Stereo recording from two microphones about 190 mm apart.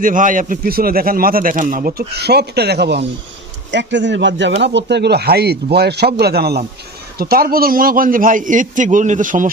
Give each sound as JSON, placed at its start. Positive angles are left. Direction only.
{"t": 0.0, "sound": "a man's voice", "side_deg": -45}